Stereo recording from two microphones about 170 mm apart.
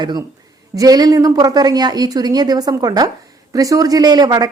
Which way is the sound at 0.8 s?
20° right (ahead or behind).